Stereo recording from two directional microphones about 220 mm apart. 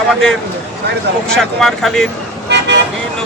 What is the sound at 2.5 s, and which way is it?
Vehicle, 50° right (ahead or behind).